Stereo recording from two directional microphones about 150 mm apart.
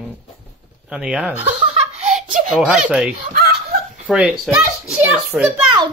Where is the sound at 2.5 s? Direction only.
5° right (ahead or behind).